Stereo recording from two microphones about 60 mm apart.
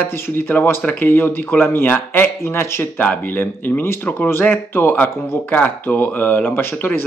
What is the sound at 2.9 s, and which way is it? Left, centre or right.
Speech, left.